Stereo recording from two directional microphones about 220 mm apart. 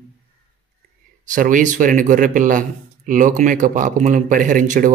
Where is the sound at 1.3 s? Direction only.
35° right (ahead or behind).